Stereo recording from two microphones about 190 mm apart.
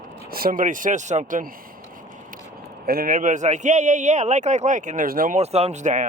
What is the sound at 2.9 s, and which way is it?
Speech, 50° right (ahead or behind).